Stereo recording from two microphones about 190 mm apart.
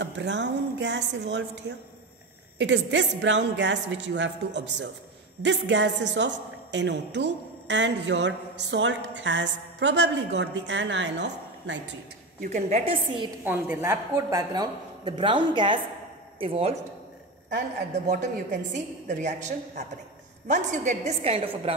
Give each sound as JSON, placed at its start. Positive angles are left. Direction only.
{"t": 0.0, "sound": "a woman's voice", "side_deg": -70}
{"t": 12.4, "sound": "a woman's voice", "side_deg": -40}
{"t": 13.4, "sound": "a woman's voice", "side_deg": -10}
{"t": 18.0, "sound": "a woman's voice", "side_deg": -40}